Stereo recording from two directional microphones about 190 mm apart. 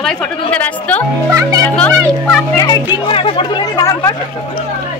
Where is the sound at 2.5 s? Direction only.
20° left (ahead or behind).